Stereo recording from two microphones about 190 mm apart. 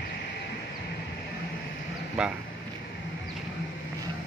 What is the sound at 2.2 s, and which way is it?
Speech, 5° right (ahead or behind).